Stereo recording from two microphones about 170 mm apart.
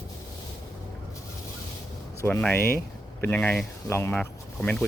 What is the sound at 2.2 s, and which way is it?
Speech, 10° left (ahead or behind).